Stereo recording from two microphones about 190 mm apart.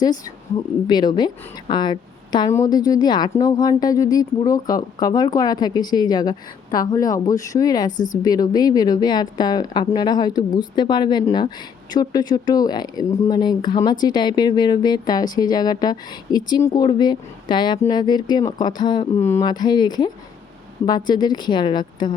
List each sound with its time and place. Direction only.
0.0 s a woman's voice: 20° left (ahead or behind)